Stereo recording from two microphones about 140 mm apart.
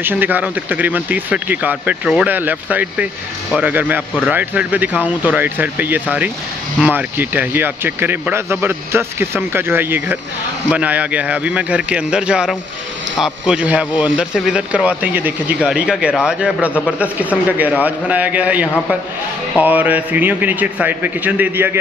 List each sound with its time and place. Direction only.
0.0 s speech: 15° right (ahead or behind)